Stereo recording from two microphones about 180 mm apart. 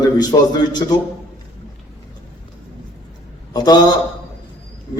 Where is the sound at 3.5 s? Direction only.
20° left (ahead or behind).